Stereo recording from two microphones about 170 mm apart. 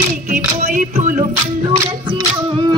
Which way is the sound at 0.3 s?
50° right (ahead or behind).